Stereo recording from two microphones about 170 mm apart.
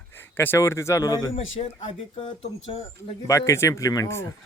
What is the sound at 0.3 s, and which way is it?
Speech, 15° left (ahead or behind).